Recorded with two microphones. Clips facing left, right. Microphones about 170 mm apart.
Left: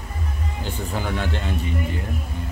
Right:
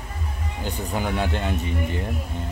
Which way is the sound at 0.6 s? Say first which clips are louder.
Right 2 dB; 15° right (ahead or behind).